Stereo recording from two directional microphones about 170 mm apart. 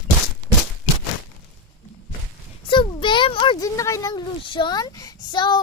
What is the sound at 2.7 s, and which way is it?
A child's voice, 30° left (ahead or behind).